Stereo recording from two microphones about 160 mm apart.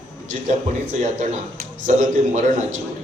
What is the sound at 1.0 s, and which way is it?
A man's voice, 50° right (ahead or behind).